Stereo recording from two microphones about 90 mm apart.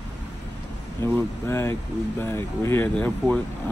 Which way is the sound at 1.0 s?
30° left (ahead or behind).